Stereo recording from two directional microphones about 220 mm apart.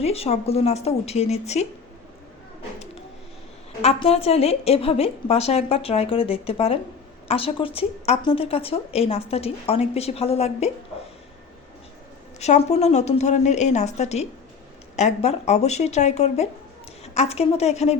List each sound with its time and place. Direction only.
0.0 s a woman's voice: 25° left (ahead or behind)
3.8 s a woman's voice: 30° left (ahead or behind)
12.4 s a woman's voice: 30° left (ahead or behind)